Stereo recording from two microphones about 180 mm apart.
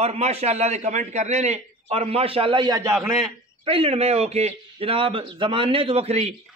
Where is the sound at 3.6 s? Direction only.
30° right (ahead or behind).